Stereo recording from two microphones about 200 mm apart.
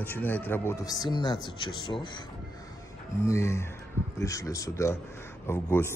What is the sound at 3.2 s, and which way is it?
Speech, 15° left (ahead or behind).